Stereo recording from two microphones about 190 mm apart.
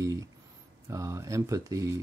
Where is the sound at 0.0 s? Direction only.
15° right (ahead or behind).